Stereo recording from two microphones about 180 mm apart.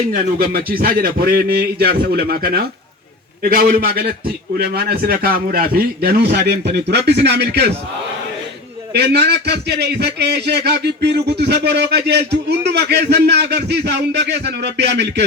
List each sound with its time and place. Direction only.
0.1 s a man's voice: 55° right (ahead or behind)
8.9 s a man's voice: 65° right (ahead or behind)